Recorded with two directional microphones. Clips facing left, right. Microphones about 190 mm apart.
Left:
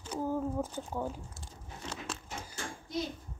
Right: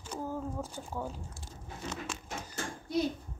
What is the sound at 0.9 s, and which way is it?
Speech, 15° left (ahead or behind).